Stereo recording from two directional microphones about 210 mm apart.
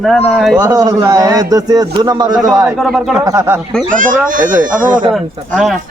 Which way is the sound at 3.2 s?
15° right (ahead or behind).